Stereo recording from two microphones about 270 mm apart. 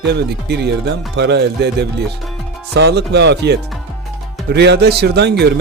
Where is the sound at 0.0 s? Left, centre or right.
Right.